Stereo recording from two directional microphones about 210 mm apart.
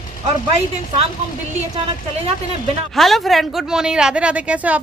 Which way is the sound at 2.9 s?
Centre (ahead or behind).